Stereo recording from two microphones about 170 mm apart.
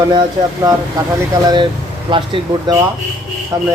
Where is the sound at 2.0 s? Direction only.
30° right (ahead or behind).